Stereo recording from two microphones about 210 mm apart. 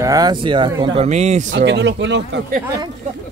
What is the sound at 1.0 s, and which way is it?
Speech, 35° right (ahead or behind).